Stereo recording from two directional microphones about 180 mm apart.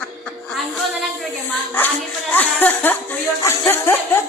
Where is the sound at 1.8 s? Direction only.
10° left (ahead or behind).